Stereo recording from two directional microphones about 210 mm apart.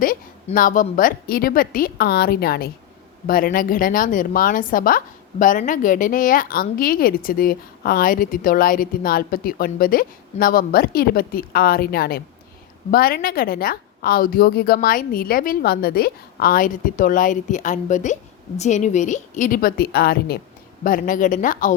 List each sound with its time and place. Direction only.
0.4 s a woman's voice: 40° left (ahead or behind)